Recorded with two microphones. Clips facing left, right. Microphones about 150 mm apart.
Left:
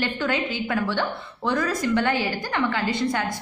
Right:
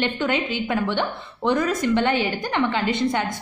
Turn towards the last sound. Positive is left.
turn(degrees=-20)  # may be behind; listen again after turning